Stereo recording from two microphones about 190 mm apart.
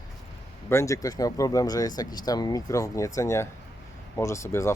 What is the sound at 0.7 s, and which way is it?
Speech, 15° left (ahead or behind).